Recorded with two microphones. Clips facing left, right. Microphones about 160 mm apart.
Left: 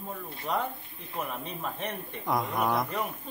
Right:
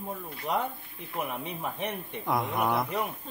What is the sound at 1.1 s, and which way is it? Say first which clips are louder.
Speech: right 1 dB; 15° right (ahead or behind).